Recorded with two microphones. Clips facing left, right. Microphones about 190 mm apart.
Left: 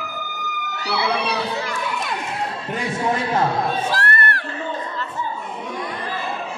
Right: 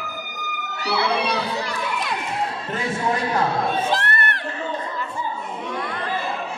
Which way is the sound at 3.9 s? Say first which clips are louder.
Left 1 dB; 20° right (ahead or behind).